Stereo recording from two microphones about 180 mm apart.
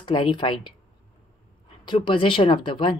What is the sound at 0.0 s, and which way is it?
Speech, 30° left (ahead or behind).